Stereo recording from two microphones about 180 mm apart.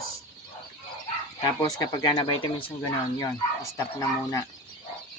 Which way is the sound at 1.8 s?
20° left (ahead or behind).